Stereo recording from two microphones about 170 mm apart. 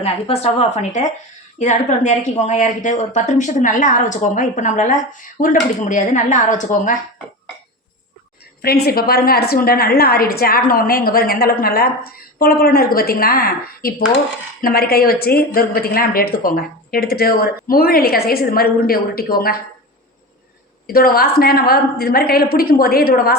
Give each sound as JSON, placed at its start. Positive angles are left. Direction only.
{"t": 0.0, "sound": "a woman's voice", "side_deg": 35}
{"t": 8.6, "sound": "a woman's voice", "side_deg": 65}
{"t": 20.8, "sound": "a woman's voice", "side_deg": 60}